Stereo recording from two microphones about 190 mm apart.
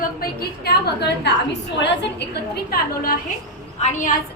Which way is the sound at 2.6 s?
50° left (ahead or behind).